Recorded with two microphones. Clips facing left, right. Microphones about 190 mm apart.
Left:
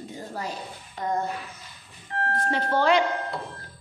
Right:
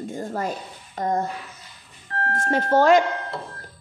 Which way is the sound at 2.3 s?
45° right (ahead or behind).